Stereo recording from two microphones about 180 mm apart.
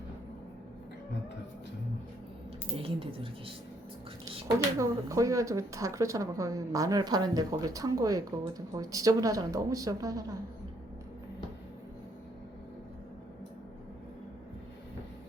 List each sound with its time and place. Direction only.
2.7 s speech: 30° right (ahead or behind)
4.4 s speech: 15° right (ahead or behind)